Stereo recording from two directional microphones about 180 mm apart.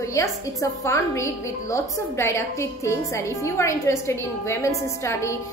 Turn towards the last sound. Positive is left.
turn(degrees=15)  # may be behind; listen again after turning